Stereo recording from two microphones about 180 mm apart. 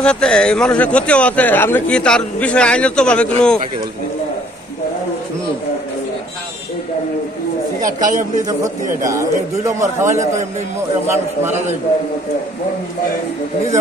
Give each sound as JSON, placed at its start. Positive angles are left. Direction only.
{"t": 0.0, "sound": "speech", "side_deg": 5}
{"t": 9.0, "sound": "a man's voice", "side_deg": -15}